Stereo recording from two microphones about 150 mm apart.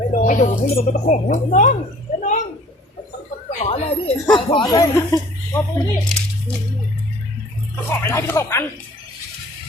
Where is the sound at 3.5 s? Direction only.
45° left (ahead or behind).